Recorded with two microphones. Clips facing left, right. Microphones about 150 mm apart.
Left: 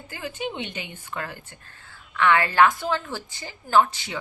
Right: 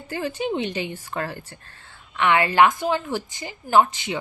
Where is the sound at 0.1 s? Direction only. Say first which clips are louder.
Right 6 dB; 35° right (ahead or behind).